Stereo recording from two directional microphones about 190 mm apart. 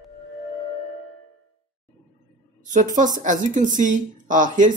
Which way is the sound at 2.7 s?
40° right (ahead or behind).